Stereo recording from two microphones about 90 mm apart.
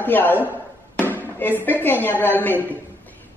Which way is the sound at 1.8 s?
20° left (ahead or behind).